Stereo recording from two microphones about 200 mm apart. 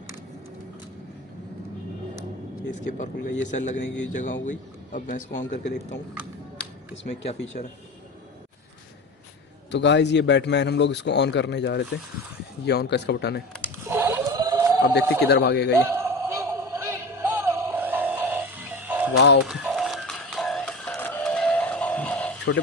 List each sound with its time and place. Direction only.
2.9 s a man's voice: 40° left (ahead or behind)
6.6 s a sound: 65° left (ahead or behind)
7.5 s a man's voice: 45° left (ahead or behind)
9.7 s a man's voice: 60° left (ahead or behind)
13.8 s a sound: 10° right (ahead or behind)
15.2 s a man's voice: 55° left (ahead or behind)
15.9 s music: 15° right (ahead or behind)
19.1 s a man's voice: 60° left (ahead or behind)
19.4 s music: centre (ahead or behind)